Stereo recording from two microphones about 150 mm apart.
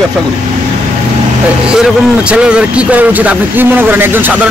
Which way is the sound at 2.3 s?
5° right (ahead or behind).